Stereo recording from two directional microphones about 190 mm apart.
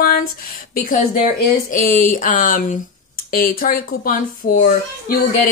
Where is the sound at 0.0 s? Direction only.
50° left (ahead or behind).